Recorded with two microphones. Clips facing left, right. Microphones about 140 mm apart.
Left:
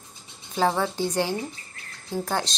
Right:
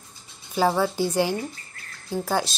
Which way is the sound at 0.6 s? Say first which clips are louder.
Right 2 dB; 5° right (ahead or behind).